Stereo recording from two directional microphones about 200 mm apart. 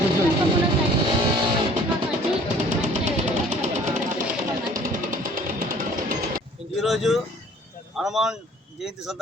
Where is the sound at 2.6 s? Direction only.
35° right (ahead or behind).